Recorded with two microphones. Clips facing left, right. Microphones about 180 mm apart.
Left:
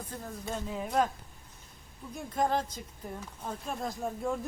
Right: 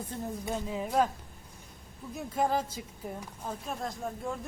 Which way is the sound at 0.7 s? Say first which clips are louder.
Right 1 dB; 5° right (ahead or behind).